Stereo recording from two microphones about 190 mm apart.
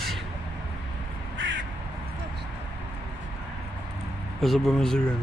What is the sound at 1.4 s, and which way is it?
Crow, 80° right.